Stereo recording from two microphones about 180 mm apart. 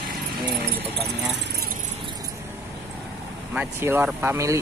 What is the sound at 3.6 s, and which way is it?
Speech, 10° right (ahead or behind).